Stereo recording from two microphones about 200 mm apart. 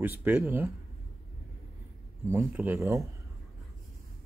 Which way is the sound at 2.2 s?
10° right (ahead or behind).